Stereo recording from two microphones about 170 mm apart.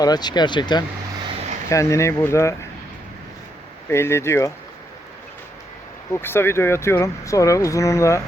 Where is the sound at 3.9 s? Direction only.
15° left (ahead or behind).